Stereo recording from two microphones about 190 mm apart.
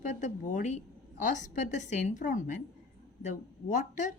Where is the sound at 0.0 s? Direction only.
40° left (ahead or behind).